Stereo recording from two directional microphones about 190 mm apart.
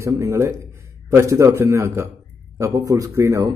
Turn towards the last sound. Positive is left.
turn(degrees=-15)  # may be behind; listen again after turning